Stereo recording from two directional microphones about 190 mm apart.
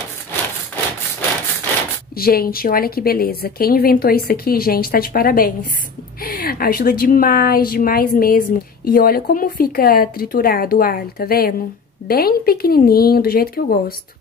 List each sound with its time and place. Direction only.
2.1 s speech: 50° left (ahead or behind)